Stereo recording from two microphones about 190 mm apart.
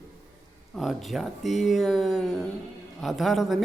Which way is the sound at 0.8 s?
Centre (ahead or behind).